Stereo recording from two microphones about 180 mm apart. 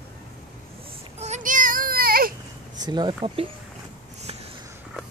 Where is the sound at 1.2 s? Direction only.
40° right (ahead or behind).